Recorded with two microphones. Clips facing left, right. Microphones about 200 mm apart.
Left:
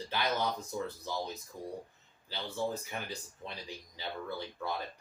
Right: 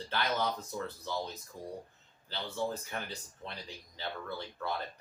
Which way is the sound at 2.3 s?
10° left (ahead or behind).